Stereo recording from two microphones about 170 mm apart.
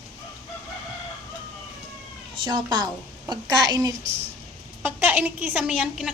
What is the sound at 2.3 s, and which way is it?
A woman's voice, 30° right (ahead or behind).